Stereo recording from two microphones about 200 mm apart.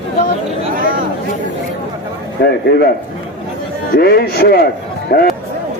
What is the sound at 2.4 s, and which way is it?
Speech, 55° left (ahead or behind).